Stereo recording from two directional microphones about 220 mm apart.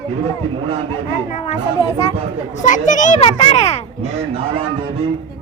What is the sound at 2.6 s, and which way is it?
A child's voice, 35° left (ahead or behind).